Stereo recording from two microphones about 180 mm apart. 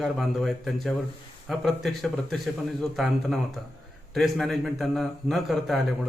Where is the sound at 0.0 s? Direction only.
Centre (ahead or behind).